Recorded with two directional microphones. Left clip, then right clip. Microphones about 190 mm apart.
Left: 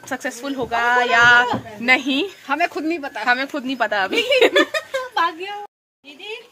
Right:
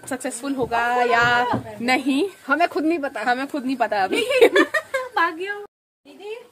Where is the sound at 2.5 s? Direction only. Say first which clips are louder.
Right 2 dB; 65° right (ahead or behind).